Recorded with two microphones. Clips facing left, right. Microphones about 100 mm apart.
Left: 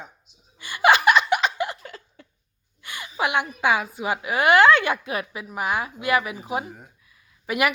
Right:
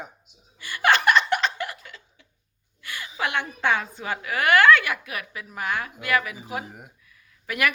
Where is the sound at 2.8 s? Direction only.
20° left (ahead or behind).